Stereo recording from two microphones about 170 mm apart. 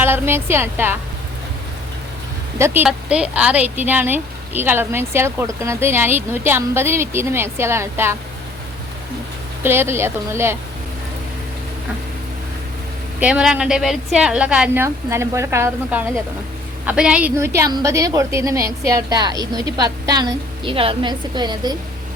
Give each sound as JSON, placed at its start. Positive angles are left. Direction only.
{"t": 0.0, "sound": "a woman's voice", "side_deg": -15}
{"t": 2.6, "sound": "a woman's voice", "side_deg": -15}
{"t": 9.6, "sound": "a woman's voice", "side_deg": -15}
{"t": 13.1, "sound": "a woman's voice", "side_deg": -5}